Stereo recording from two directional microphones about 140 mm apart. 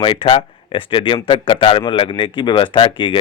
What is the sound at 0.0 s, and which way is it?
Speech, 40° left (ahead or behind).